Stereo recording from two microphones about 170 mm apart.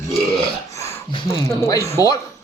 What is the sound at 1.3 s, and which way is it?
Speech, 15° left (ahead or behind).